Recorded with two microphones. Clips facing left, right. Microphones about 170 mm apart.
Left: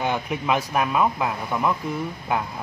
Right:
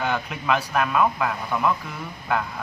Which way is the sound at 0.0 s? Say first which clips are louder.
Left 1 dB; 15° left (ahead or behind).